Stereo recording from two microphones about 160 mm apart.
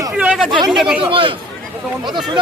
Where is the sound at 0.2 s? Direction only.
10° right (ahead or behind).